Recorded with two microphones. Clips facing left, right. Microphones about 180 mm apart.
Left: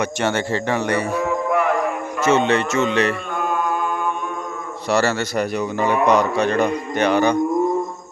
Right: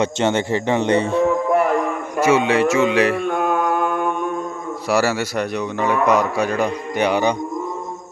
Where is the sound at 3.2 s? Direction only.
60° right (ahead or behind).